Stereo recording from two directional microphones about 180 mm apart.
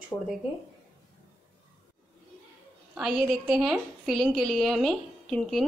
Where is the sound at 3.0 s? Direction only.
Centre (ahead or behind).